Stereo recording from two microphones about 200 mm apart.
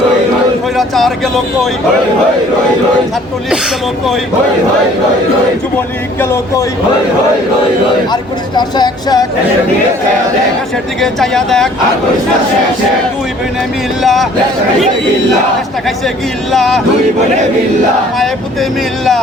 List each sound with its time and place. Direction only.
0.8 s speech: centre (ahead or behind)
6.1 s speech: 10° left (ahead or behind)
8.1 s speech: 20° left (ahead or behind)
11.0 s speech: centre (ahead or behind)
14.0 s speech: centre (ahead or behind)
16.5 s speech: centre (ahead or behind)